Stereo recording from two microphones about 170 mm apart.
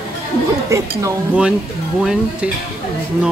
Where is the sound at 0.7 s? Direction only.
20° right (ahead or behind).